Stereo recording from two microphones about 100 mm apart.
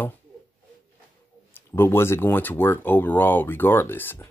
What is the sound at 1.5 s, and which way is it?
Speech, 20° left (ahead or behind).